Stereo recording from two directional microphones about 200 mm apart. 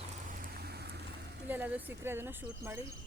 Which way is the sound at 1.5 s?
10° right (ahead or behind).